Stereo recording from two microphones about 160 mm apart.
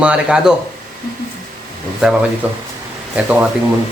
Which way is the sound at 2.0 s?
5° right (ahead or behind).